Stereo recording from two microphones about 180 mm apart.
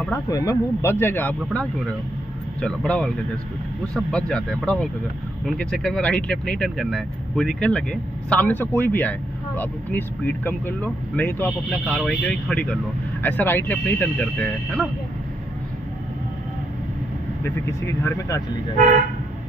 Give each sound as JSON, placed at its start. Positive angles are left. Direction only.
{"t": 0.1, "sound": "speech", "side_deg": 20}
{"t": 2.6, "sound": "speech", "side_deg": 5}
{"t": 17.4, "sound": "speech", "side_deg": 15}